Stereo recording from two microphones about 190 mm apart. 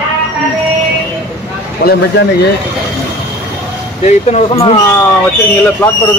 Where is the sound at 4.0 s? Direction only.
35° left (ahead or behind).